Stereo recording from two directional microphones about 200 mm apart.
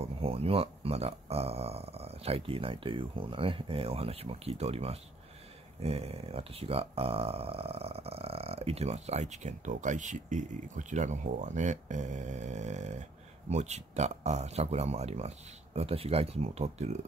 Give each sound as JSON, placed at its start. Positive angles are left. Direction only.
{"t": 0.0, "sound": "speech", "side_deg": -30}